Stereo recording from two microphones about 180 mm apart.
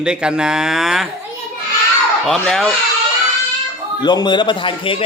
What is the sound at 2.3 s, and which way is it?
Speech, centre (ahead or behind).